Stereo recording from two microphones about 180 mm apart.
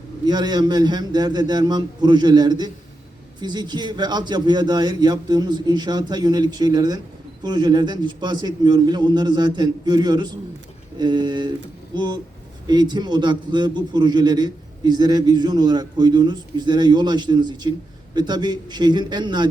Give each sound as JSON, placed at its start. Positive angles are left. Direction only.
{"t": 0.3, "sound": "a man's voice", "side_deg": -25}